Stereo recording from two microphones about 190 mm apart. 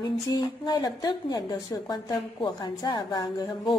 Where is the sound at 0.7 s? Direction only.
20° left (ahead or behind).